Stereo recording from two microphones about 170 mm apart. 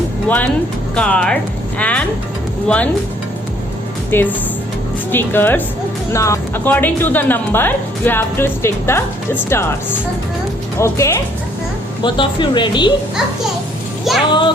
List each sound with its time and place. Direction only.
0.3 s a woman's voice: 10° left (ahead or behind)
4.1 s a woman's voice: 10° left (ahead or behind)
10.8 s a woman's voice: 15° left (ahead or behind)
12.0 s speech: 30° left (ahead or behind)
14.1 s a child's voice: centre (ahead or behind)